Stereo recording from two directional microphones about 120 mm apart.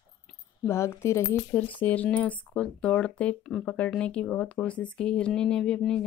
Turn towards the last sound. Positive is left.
turn(degrees=5)  # may be behind; listen again after turning